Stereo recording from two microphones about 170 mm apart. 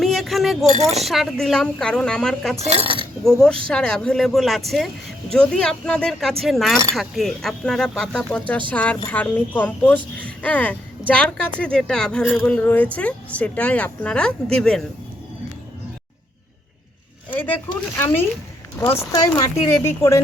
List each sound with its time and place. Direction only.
0.0 s keys jangling: centre (ahead or behind)
1.0 s speech: centre (ahead or behind)
2.6 s speech: 35° right (ahead or behind)
3.2 s speech: 5° left (ahead or behind)
17.3 s speech: 10° left (ahead or behind)